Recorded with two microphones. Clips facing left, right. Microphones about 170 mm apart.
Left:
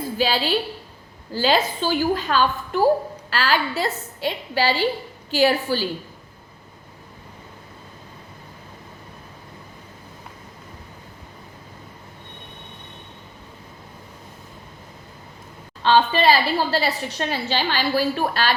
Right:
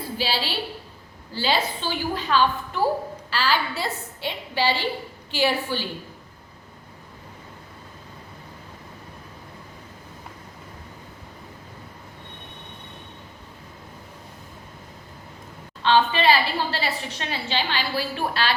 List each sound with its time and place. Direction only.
0.2 s a woman's voice: 45° left (ahead or behind)
15.8 s a woman's voice: 40° left (ahead or behind)